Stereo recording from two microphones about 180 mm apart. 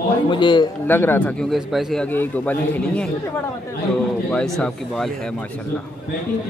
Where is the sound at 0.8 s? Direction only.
10° left (ahead or behind).